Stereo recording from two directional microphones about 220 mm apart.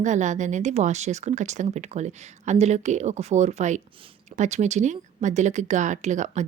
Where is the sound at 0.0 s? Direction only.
35° right (ahead or behind).